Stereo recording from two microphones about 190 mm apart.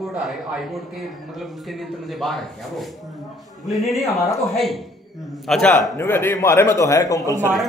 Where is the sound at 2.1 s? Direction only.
Centre (ahead or behind).